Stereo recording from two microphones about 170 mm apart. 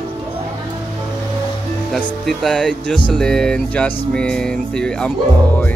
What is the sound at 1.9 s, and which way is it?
Music, centre (ahead or behind).